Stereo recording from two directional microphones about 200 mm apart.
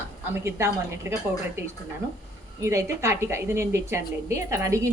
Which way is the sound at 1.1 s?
10° right (ahead or behind).